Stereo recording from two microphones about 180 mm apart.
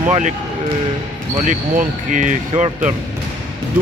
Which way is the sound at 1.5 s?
45° right (ahead or behind).